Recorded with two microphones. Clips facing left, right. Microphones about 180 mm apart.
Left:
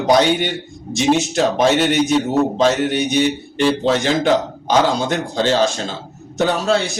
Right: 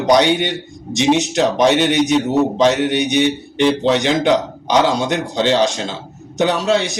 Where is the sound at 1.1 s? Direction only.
20° right (ahead or behind).